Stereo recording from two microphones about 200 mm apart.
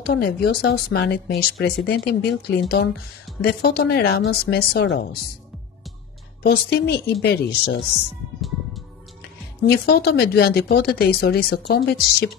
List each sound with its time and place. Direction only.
0.0 s speech: 50° left (ahead or behind)
6.4 s a woman's voice: 55° left (ahead or behind)
9.6 s speech: 50° left (ahead or behind)